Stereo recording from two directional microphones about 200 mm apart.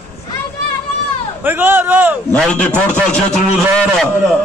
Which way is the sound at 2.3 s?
5° left (ahead or behind).